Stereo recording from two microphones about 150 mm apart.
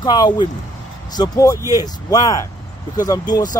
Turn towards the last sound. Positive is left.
turn(degrees=25)  # may be behind; listen again after turning